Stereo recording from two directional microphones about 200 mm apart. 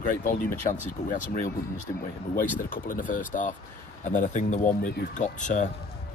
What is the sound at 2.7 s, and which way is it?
Speech, 45° left (ahead or behind).